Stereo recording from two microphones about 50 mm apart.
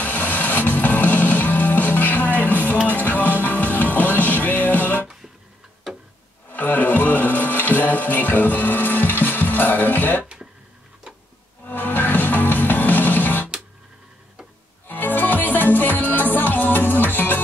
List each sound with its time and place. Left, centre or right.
0.0 s music: left
6.5 s music: left
10.2 s a sound: centre
11.6 s music: left
14.9 s music: left